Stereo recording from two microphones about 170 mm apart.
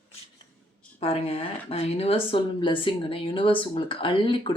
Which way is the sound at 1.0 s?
35° left (ahead or behind).